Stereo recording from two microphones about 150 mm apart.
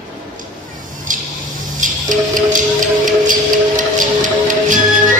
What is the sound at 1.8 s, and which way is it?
Music, 60° right (ahead or behind).